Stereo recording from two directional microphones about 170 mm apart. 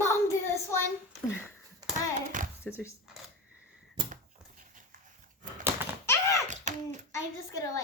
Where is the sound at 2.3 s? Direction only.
50° right (ahead or behind).